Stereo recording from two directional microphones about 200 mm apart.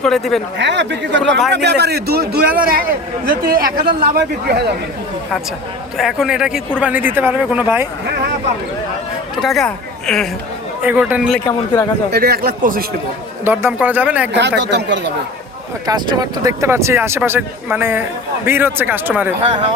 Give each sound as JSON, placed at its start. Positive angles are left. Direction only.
{"t": 0.0, "sound": "a woman's voice", "side_deg": 0}
{"t": 0.6, "sound": "a man's voice", "side_deg": -60}
{"t": 6.0, "sound": "a woman's voice", "side_deg": 0}
{"t": 9.4, "sound": "a woman's voice", "side_deg": 0}
{"t": 10.8, "sound": "speech", "side_deg": -10}
{"t": 12.1, "sound": "a man's voice", "side_deg": -50}
{"t": 13.4, "sound": "speech", "side_deg": -10}
{"t": 14.3, "sound": "speech", "side_deg": -60}
{"t": 15.9, "sound": "speech", "side_deg": -20}
{"t": 19.4, "sound": "speech", "side_deg": -30}